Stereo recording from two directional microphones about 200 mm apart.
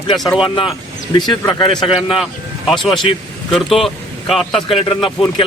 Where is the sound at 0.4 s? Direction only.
25° left (ahead or behind).